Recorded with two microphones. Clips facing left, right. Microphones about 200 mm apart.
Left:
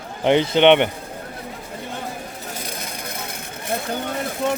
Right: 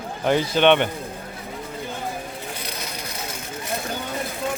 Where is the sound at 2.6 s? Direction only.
50° left (ahead or behind).